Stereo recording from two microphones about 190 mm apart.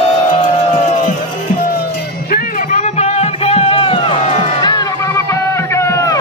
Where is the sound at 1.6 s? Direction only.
50° left (ahead or behind); by 4.2 s 25° left (ahead or behind).